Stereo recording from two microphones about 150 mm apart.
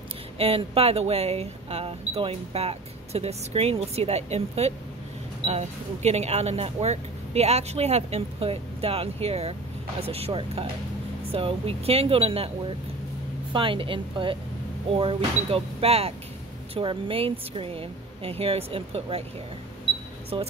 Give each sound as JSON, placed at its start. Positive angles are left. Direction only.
{"t": 0.4, "sound": "a woman's voice", "side_deg": -40}
{"t": 20.3, "sound": "a woman's voice", "side_deg": -35}